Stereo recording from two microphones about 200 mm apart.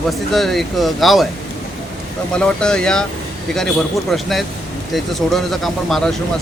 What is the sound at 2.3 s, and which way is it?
Speech, 5° left (ahead or behind).